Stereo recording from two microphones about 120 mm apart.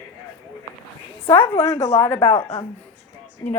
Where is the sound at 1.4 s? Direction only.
20° left (ahead or behind).